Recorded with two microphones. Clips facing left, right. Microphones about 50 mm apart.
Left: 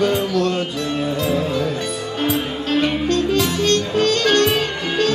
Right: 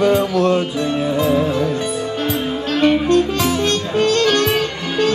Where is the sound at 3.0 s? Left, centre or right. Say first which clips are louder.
Right 3 dB; centre.